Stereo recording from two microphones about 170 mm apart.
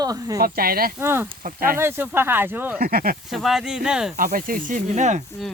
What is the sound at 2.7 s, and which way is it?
Speech, 60° right (ahead or behind).